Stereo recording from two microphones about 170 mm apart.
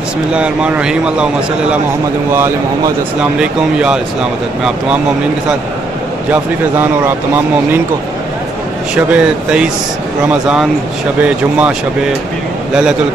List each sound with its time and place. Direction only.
0.3 s a man's voice: 5° right (ahead or behind)
3.2 s a man's voice: 5° right (ahead or behind)
6.3 s speech: 10° right (ahead or behind)
8.9 s a man's voice: 5° right (ahead or behind)